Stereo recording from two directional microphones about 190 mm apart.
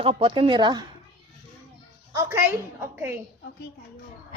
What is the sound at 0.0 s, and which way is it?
Speech, 30° right (ahead or behind).